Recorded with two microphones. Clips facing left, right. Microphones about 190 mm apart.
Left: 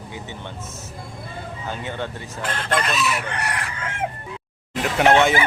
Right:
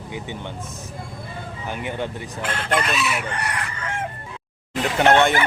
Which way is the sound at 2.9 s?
40° left (ahead or behind).